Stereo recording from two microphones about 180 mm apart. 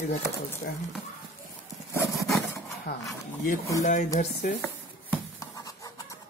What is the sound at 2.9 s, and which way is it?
Speech, 65° left (ahead or behind).